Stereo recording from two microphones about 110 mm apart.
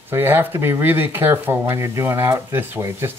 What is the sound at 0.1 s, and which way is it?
Speech, 20° right (ahead or behind).